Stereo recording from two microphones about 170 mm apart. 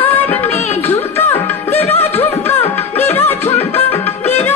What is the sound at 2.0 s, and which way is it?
Music, 40° left (ahead or behind).